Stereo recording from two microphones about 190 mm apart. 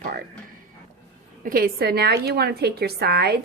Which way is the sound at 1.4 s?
50° right (ahead or behind).